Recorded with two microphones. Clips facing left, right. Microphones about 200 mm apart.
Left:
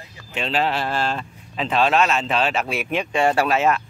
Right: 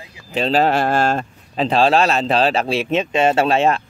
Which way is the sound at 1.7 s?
35° right (ahead or behind).